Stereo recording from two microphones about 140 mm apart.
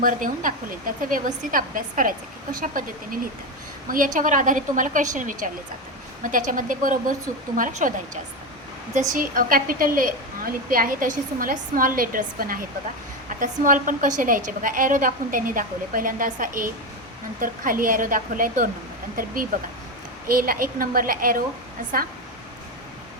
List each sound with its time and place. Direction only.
0.0 s a woman's voice: 75° right (ahead or behind)
9.1 s a woman's voice: 80° right
13.4 s a woman's voice: 70° right (ahead or behind)
19.1 s a woman's voice: 90° right